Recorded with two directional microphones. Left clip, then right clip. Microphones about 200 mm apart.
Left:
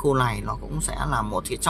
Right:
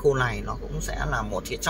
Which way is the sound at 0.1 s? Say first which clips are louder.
Left 2 dB; 25° left (ahead or behind).